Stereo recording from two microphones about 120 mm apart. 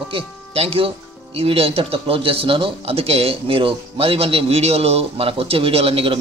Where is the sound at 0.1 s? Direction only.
50° right (ahead or behind).